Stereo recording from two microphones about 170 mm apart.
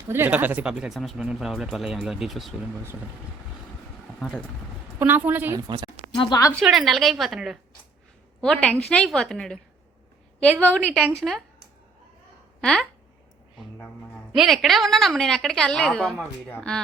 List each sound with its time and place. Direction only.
0.1 s speech: 10° right (ahead or behind)
4.2 s a woman's voice: centre (ahead or behind)
5.6 s a woman's voice: 25° right (ahead or behind)
6.1 s speech: 20° left (ahead or behind)
6.6 s speech: centre (ahead or behind)
12.6 s speech: 5° left (ahead or behind)
14.3 s speech: centre (ahead or behind)